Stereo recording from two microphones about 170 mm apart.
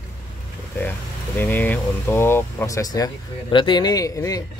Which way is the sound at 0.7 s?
10° left (ahead or behind).